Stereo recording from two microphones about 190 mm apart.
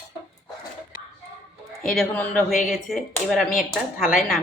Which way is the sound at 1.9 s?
Centre (ahead or behind).